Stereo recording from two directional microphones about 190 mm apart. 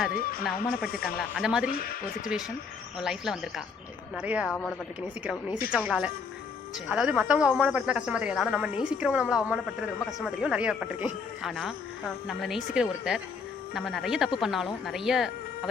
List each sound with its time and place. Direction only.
0.1 s speech: 50° left (ahead or behind)
1.2 s a woman's voice: 5° right (ahead or behind)
1.7 s speech: 50° left (ahead or behind)
3.0 s a woman's voice: 5° right (ahead or behind)